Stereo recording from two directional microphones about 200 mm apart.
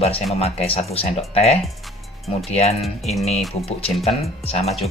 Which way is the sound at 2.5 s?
30° left (ahead or behind).